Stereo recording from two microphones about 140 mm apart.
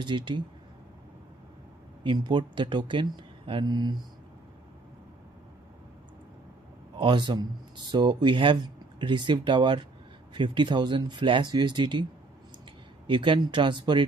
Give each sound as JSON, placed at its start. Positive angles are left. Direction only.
{"t": 0.0, "sound": "speech", "side_deg": -35}
{"t": 2.0, "sound": "speech", "side_deg": -35}
{"t": 7.0, "sound": "speech", "side_deg": -35}